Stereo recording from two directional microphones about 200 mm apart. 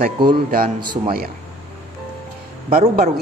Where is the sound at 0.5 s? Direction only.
45° right (ahead or behind).